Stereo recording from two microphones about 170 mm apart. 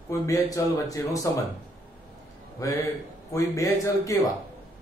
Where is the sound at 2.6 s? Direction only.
20° left (ahead or behind).